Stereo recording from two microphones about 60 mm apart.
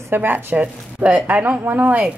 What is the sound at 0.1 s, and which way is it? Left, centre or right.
Speech, right.